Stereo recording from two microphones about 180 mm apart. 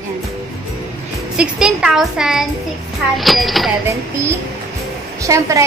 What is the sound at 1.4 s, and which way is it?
A woman's voice, 5° right (ahead or behind).